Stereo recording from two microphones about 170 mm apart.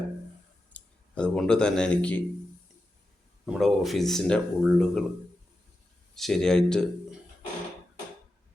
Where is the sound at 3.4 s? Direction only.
Centre (ahead or behind).